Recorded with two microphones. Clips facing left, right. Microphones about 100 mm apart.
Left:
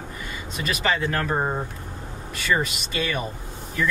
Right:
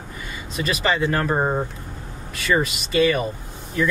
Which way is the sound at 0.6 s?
Centre (ahead or behind).